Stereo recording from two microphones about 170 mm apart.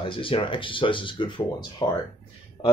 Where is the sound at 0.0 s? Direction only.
30° left (ahead or behind).